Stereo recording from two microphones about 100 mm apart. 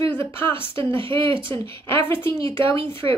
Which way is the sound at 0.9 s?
60° right (ahead or behind).